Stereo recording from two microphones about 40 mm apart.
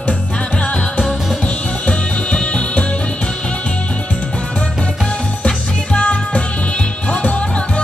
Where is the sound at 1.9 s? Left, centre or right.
Left.